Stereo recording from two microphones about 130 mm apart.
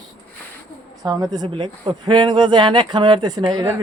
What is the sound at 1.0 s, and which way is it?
Speech, 30° right (ahead or behind).